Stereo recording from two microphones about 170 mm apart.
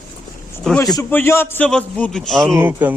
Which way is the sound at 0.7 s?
25° left (ahead or behind).